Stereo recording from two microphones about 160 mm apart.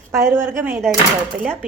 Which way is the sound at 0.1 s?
15° right (ahead or behind).